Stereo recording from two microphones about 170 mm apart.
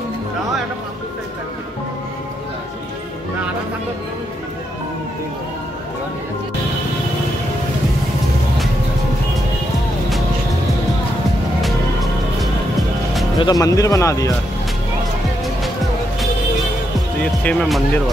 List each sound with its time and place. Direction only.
11.6 s music: centre (ahead or behind)
13.4 s speech: 20° left (ahead or behind)
17.2 s speech: 5° left (ahead or behind)